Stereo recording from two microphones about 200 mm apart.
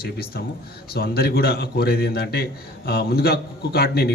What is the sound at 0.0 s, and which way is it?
Speech, 50° left (ahead or behind).